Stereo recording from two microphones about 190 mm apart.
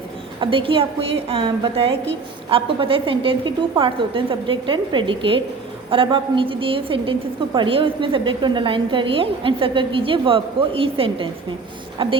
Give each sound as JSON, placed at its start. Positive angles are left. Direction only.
{"t": 0.3, "sound": "a woman's voice", "side_deg": -30}